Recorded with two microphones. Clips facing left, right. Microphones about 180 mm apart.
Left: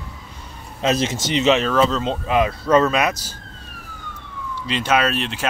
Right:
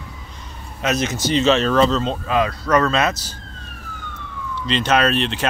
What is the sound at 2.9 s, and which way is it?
Speech, 15° left (ahead or behind).